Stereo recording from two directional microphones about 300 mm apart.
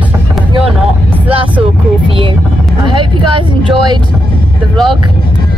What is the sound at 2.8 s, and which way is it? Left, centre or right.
Speech, centre.